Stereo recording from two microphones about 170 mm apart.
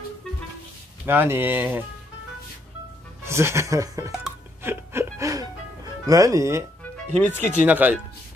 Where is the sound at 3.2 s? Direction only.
15° right (ahead or behind).